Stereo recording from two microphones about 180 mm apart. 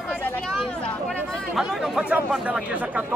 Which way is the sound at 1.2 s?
Centre (ahead or behind).